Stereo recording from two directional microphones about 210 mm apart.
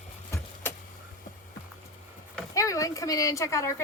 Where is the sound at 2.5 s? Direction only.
15° left (ahead or behind).